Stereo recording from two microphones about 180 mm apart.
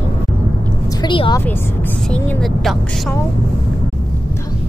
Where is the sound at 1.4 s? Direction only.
10° left (ahead or behind).